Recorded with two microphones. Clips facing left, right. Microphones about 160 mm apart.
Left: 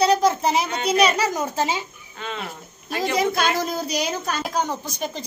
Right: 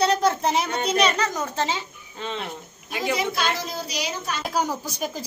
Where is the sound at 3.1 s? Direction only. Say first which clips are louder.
Left 5 dB; 50° left (ahead or behind).